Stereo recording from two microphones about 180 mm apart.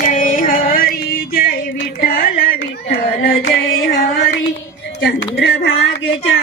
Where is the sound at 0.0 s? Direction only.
45° left (ahead or behind); by 5.7 s 65° left (ahead or behind).